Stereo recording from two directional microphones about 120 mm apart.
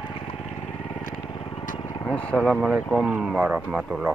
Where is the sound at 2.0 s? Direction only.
10° left (ahead or behind).